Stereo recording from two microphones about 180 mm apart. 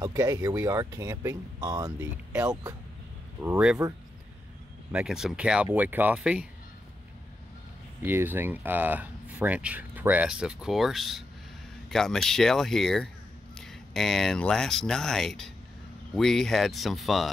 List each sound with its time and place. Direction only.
0.0 s speech: 20° right (ahead or behind)
4.9 s speech: centre (ahead or behind)
8.0 s speech: 10° right (ahead or behind)